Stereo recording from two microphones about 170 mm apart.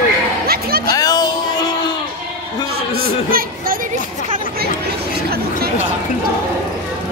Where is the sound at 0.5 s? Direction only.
65° right (ahead or behind).